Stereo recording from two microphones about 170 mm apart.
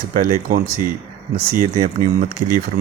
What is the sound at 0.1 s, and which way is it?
A man's voice, 55° right (ahead or behind).